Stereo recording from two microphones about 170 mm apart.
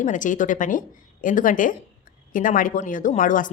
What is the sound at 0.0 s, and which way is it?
A woman's voice, 50° left (ahead or behind).